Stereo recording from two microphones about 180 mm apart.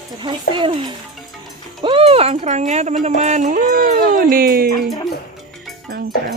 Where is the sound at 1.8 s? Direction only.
30° right (ahead or behind); by 4.6 s 55° right (ahead or behind).